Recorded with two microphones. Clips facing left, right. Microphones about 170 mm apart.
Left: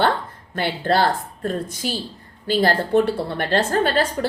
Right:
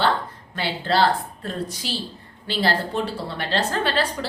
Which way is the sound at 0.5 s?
50° left (ahead or behind).